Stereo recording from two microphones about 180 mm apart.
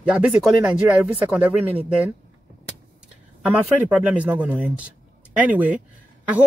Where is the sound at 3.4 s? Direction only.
10° right (ahead or behind).